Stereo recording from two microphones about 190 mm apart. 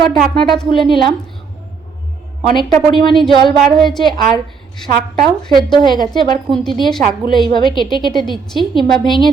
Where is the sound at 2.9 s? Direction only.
25° left (ahead or behind).